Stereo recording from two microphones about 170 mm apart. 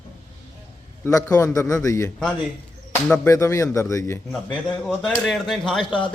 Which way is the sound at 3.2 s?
20° left (ahead or behind).